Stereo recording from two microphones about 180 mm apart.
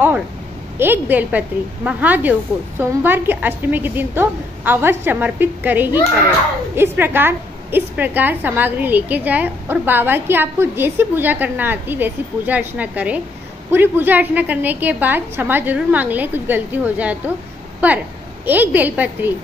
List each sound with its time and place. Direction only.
0.7 s a woman's voice: 10° right (ahead or behind)